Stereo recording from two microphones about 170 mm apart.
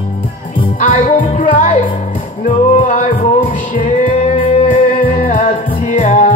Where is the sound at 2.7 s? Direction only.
45° left (ahead or behind).